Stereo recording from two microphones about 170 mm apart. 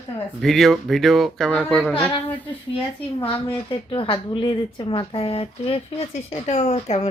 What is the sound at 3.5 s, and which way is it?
Speech, 30° left (ahead or behind).